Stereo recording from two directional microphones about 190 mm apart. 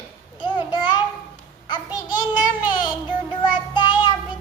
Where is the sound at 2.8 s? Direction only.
25° left (ahead or behind).